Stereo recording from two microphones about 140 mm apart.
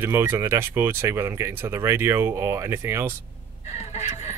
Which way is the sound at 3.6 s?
55° left (ahead or behind).